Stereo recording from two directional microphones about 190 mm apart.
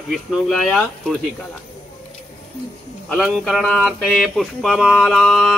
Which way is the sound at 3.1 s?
Centre (ahead or behind).